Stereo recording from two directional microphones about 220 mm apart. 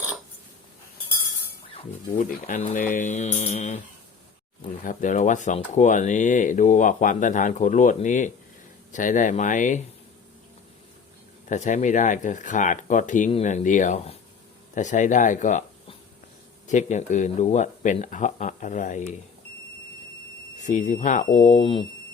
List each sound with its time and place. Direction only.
2.1 s speech: 35° left (ahead or behind)
11.4 s speech: 35° left (ahead or behind)
20.6 s speech: 35° left (ahead or behind)
21.6 s speech: 25° left (ahead or behind)